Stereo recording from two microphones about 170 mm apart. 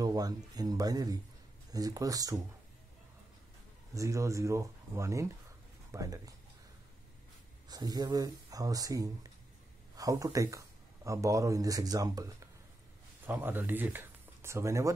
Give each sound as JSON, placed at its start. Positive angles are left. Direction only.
{"t": 0.0, "sound": "speech", "side_deg": -20}
{"t": 3.9, "sound": "speech", "side_deg": -20}
{"t": 7.6, "sound": "speech", "side_deg": -25}